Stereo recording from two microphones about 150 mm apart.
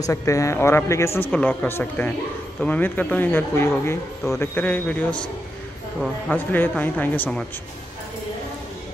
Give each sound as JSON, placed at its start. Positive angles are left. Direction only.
{"t": 0.0, "sound": "speech", "side_deg": 20}
{"t": 1.3, "sound": "speech", "side_deg": 5}
{"t": 6.3, "sound": "speech", "side_deg": 10}